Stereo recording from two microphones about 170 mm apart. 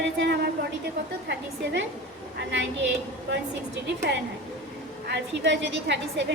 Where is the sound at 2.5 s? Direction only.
90° right.